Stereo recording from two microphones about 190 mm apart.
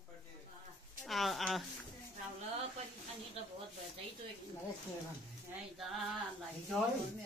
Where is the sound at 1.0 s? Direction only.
Centre (ahead or behind).